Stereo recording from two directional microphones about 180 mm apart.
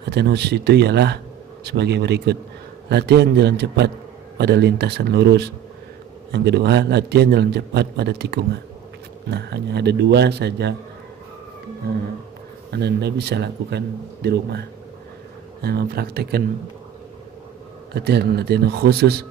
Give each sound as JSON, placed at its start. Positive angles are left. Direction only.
{"t": 0.1, "sound": "a man's voice", "side_deg": -65}
{"t": 12.7, "sound": "a man's voice", "side_deg": -65}
{"t": 15.6, "sound": "speech", "side_deg": -60}
{"t": 17.9, "sound": "speech", "side_deg": -65}